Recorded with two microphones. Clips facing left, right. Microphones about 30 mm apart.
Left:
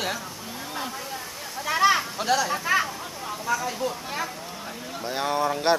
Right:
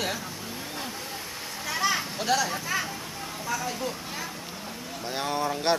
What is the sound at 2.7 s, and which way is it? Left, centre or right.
Speech, left.